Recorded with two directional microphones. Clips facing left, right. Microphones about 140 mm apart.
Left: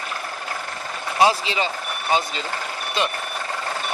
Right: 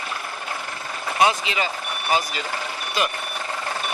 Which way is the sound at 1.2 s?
30° left (ahead or behind).